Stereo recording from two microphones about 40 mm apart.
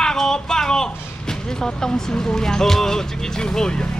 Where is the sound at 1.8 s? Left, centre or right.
Centre.